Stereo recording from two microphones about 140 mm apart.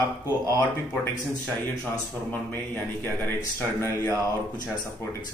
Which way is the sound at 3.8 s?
20° left (ahead or behind).